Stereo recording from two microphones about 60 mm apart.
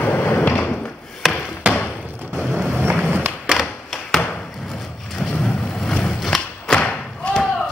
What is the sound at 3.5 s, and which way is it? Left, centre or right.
Tap, centre.